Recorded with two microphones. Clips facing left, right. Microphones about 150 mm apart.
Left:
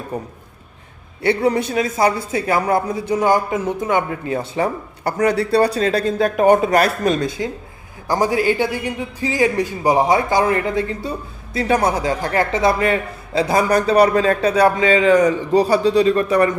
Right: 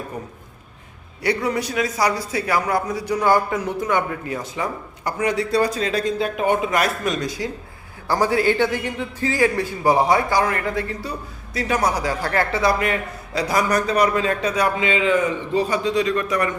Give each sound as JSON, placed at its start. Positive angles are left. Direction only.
{"t": 0.1, "sound": "a man's voice", "side_deg": 30}
{"t": 6.1, "sound": "a man's voice", "side_deg": 45}